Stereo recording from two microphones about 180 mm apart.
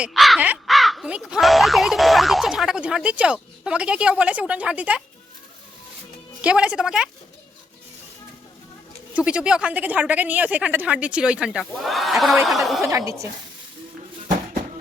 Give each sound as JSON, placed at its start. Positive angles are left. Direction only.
{"t": 0.0, "sound": "speech", "side_deg": 0}
{"t": 6.4, "sound": "speech", "side_deg": -5}
{"t": 9.1, "sound": "speech", "side_deg": -5}
{"t": 12.8, "sound": "a woman's voice", "side_deg": -15}